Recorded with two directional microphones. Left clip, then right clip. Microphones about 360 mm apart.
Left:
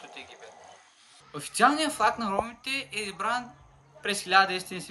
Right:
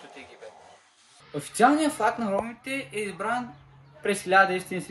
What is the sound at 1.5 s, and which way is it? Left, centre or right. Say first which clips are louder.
Speech: right 2 dB; centre.